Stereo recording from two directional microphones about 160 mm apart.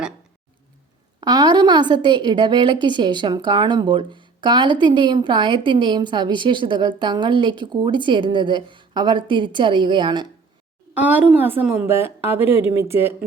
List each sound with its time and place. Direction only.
1.2 s a woman's voice: 25° right (ahead or behind)
10.9 s a woman's voice: 10° right (ahead or behind)